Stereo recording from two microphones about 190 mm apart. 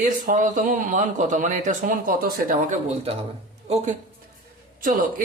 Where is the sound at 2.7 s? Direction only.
30° right (ahead or behind).